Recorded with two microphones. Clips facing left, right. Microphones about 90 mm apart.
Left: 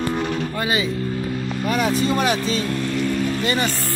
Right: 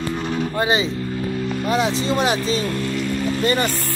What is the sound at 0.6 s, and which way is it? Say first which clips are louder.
Speech: right 4 dB; 25° right (ahead or behind).